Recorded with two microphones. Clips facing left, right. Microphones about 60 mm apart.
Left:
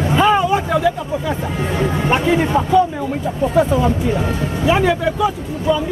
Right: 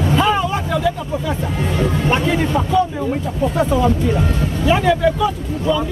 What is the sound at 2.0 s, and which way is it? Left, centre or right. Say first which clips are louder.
Speech: left 4 dB; centre.